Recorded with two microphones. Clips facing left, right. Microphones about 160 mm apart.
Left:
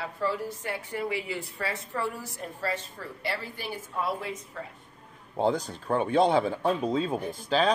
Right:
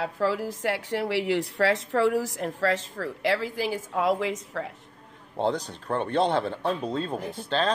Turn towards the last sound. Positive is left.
turn(degrees=5)  # may be behind; listen again after turning